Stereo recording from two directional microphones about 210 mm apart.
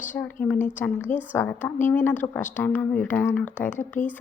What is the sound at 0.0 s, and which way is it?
A woman's voice, 10° left (ahead or behind).